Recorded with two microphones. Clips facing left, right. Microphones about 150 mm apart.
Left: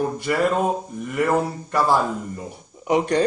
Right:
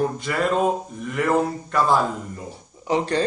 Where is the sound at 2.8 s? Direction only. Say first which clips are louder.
Left 2 dB; 15° left (ahead or behind).